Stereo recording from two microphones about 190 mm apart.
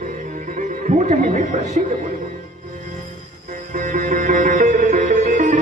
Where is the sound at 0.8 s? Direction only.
40° right (ahead or behind).